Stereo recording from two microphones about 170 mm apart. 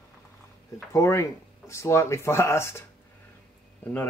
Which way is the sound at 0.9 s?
15° left (ahead or behind).